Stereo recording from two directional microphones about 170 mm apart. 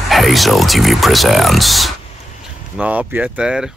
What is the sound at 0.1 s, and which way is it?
Speech, centre (ahead or behind).